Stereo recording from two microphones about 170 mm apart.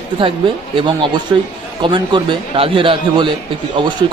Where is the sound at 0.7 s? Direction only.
30° right (ahead or behind).